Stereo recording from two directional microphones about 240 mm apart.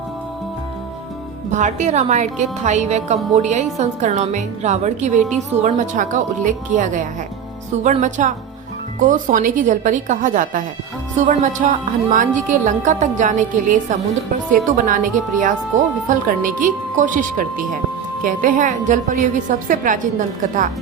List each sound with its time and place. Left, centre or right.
1.5 s a woman's voice: right
11.6 s a woman's voice: right